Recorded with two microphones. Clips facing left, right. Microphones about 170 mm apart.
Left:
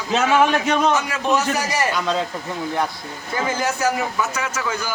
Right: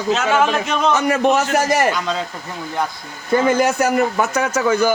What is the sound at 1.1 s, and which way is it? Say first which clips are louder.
Speech: right 5 dB; 55° right (ahead or behind).